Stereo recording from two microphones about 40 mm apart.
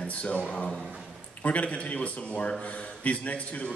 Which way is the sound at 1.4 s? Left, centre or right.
Left.